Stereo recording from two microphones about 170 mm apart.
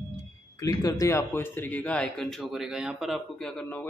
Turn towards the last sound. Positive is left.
turn(degrees=0)  # may be behind; listen again after turning